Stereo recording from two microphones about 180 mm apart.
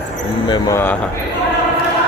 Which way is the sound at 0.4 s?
25° left (ahead or behind).